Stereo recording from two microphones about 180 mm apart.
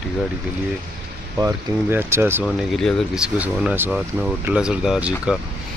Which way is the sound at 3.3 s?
10° right (ahead or behind).